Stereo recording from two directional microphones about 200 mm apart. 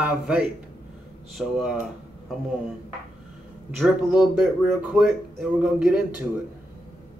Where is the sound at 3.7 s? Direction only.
Centre (ahead or behind).